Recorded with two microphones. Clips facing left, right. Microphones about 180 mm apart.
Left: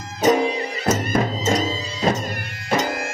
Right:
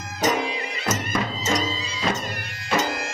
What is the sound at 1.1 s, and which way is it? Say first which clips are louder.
Music: left 5 dB; 45° left (ahead or behind).